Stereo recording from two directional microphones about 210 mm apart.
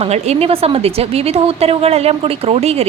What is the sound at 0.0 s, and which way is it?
Speech, 30° right (ahead or behind).